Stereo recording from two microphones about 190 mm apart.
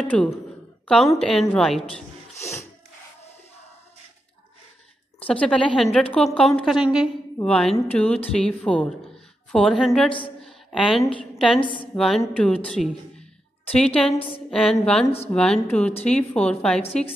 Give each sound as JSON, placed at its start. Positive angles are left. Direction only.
{"t": 0.0, "sound": "a woman's voice", "side_deg": 5}
{"t": 5.2, "sound": "a woman's voice", "side_deg": 5}
{"t": 16.8, "sound": "a woman's voice", "side_deg": 30}